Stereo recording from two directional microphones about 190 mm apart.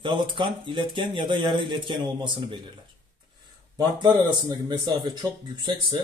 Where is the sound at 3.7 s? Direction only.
20° right (ahead or behind).